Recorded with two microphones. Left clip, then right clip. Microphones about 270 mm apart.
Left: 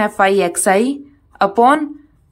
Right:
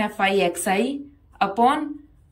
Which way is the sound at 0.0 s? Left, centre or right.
Centre.